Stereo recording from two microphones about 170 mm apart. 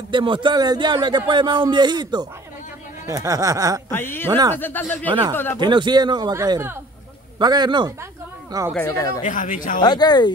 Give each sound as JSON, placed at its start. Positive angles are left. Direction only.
{"t": 0.1, "sound": "speech", "side_deg": -30}
{"t": 3.9, "sound": "speech", "side_deg": 10}
{"t": 4.3, "sound": "speech", "side_deg": -25}
{"t": 4.6, "sound": "speech", "side_deg": 10}
{"t": 5.6, "sound": "speech", "side_deg": -25}
{"t": 8.7, "sound": "speech", "side_deg": 15}
{"t": 9.2, "sound": "speech", "side_deg": 50}
{"t": 9.8, "sound": "speech", "side_deg": 25}